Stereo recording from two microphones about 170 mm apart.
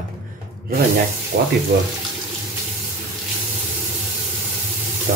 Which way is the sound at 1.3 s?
55° right (ahead or behind).